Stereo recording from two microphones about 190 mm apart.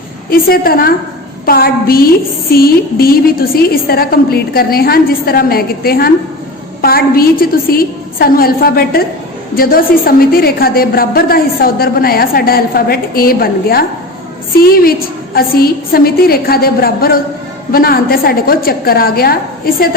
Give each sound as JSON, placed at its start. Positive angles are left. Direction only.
{"t": 0.3, "sound": "a woman's voice", "side_deg": 50}
{"t": 15.4, "sound": "a woman's voice", "side_deg": 50}